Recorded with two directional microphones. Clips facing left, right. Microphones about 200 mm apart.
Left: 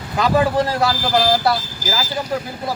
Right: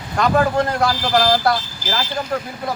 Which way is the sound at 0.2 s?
5° left (ahead or behind).